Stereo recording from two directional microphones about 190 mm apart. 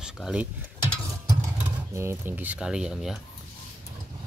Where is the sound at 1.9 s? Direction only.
15° right (ahead or behind).